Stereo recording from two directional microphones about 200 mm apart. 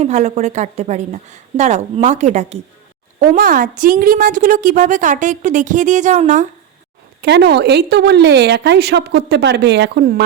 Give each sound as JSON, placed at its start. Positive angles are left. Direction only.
{"t": 0.0, "sound": "a woman's voice", "side_deg": -35}
{"t": 7.2, "sound": "a woman's voice", "side_deg": -60}